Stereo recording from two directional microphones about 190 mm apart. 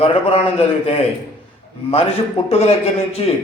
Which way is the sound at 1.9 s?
30° left (ahead or behind).